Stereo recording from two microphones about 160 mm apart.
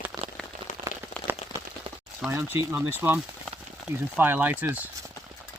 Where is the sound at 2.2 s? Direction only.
15° right (ahead or behind).